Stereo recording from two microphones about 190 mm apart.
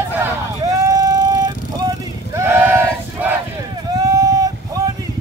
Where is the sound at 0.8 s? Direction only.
20° right (ahead or behind).